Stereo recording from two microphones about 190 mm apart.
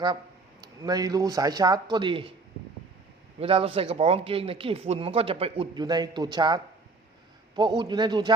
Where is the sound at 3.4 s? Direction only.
30° right (ahead or behind).